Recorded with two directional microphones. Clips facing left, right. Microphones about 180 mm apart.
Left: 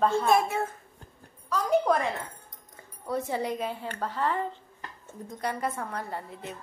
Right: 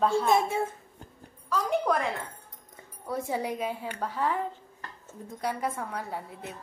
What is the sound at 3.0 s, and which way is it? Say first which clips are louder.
A woman's voice: left 1 dB; 10° right (ahead or behind).